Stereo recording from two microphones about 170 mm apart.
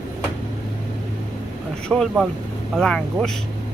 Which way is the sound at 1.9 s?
5° left (ahead or behind).